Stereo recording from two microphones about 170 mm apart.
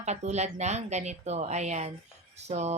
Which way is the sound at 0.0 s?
40° right (ahead or behind).